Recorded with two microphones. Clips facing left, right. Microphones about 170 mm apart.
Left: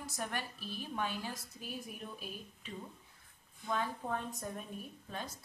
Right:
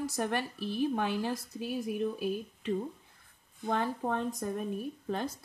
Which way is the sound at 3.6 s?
65° right (ahead or behind).